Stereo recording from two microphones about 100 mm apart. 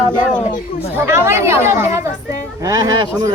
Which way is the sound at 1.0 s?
25° right (ahead or behind).